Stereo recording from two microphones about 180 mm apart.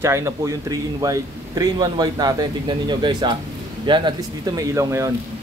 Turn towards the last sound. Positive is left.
turn(degrees=-15)  # may be behind; listen again after turning